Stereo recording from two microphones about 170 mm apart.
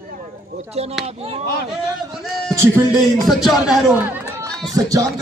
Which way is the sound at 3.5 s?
Centre (ahead or behind).